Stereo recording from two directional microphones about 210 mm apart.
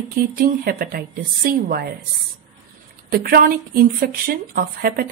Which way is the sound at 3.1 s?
45° right (ahead or behind).